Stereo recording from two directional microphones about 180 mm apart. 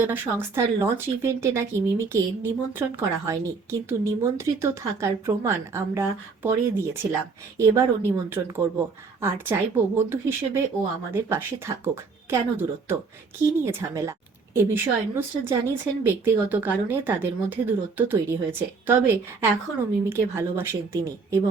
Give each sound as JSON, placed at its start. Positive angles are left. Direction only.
{"t": 0.0, "sound": "speech", "side_deg": -10}